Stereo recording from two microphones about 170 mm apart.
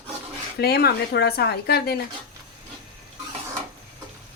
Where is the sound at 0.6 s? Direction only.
70° left (ahead or behind).